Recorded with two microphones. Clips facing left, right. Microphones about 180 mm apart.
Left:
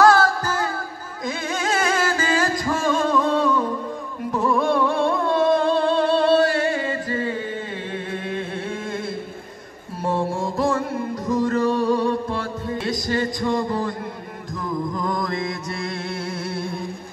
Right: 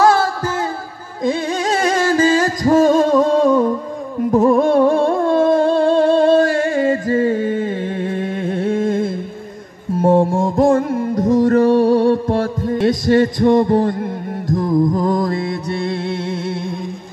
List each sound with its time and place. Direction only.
1.2 s music: 35° right (ahead or behind); by 13.9 s 50° right (ahead or behind)
14.5 s music: 40° right (ahead or behind)